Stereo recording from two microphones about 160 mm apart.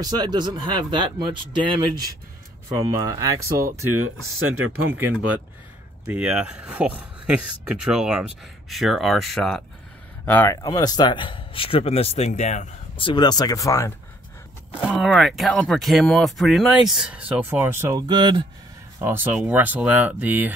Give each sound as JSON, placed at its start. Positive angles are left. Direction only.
{"t": 0.0, "sound": "speech", "side_deg": -25}
{"t": 3.2, "sound": "speech", "side_deg": -20}
{"t": 4.9, "sound": "speech", "side_deg": -10}
{"t": 10.2, "sound": "a man's voice", "side_deg": 10}
{"t": 12.9, "sound": "speech", "side_deg": 30}
{"t": 14.7, "sound": "speech", "side_deg": -5}
{"t": 18.0, "sound": "speech", "side_deg": -30}
{"t": 18.9, "sound": "speech", "side_deg": -15}